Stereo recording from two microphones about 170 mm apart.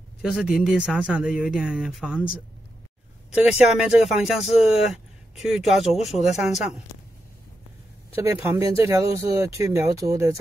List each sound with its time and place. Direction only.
0.2 s speech: centre (ahead or behind)
3.4 s speech: 5° right (ahead or behind)
8.2 s speech: 15° right (ahead or behind)